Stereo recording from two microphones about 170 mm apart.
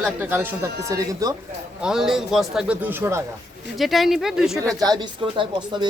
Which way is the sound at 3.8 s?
Centre (ahead or behind).